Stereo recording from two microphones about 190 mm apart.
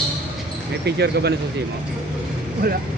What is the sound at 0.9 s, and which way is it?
Speech, 60° right (ahead or behind).